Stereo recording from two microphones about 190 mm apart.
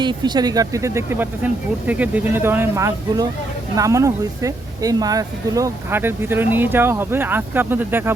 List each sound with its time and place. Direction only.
0.0 s speech: 25° right (ahead or behind)